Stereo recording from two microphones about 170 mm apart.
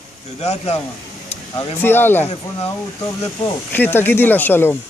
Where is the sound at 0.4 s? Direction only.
40° left (ahead or behind).